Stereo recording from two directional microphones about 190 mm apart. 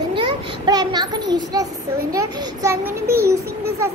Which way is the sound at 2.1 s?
20° right (ahead or behind).